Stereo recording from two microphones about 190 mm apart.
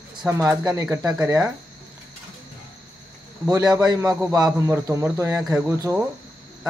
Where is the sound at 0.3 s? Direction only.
15° right (ahead or behind).